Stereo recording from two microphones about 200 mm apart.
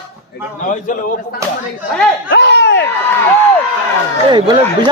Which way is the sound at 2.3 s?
60° left (ahead or behind).